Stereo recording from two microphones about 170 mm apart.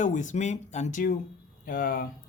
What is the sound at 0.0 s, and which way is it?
Speech, 50° left (ahead or behind).